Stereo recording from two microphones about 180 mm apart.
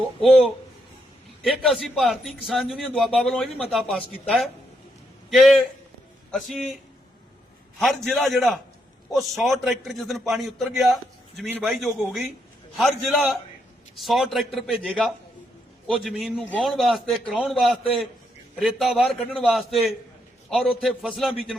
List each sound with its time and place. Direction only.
0.2 s a man's voice: 5° left (ahead or behind)
7.8 s a man's voice: centre (ahead or behind)